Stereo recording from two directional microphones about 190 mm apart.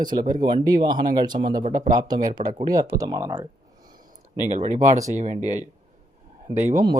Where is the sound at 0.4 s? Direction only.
20° right (ahead or behind).